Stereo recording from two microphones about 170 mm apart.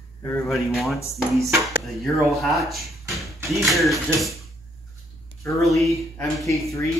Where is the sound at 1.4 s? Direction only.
15° right (ahead or behind).